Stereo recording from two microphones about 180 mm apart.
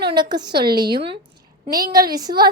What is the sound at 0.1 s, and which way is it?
Speech, 25° right (ahead or behind).